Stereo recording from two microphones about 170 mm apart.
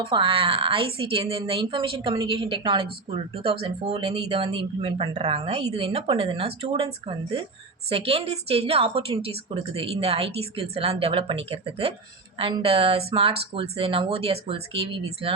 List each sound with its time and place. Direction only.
0.0 s speech: 30° right (ahead or behind)